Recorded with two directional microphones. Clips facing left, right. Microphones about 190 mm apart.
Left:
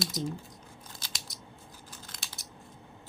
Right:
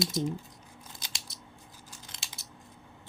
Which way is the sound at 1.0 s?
25° right (ahead or behind).